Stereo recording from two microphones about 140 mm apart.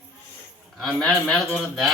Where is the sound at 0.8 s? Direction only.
Centre (ahead or behind).